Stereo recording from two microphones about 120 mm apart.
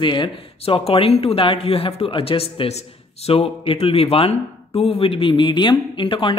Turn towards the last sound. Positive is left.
turn(degrees=45)  # may be behind; listen again after turning